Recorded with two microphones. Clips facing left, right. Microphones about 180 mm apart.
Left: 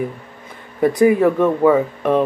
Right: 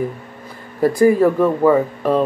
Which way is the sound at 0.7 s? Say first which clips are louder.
Right 1 dB; centre (ahead or behind).